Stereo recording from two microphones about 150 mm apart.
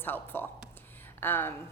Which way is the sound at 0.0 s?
15° left (ahead or behind).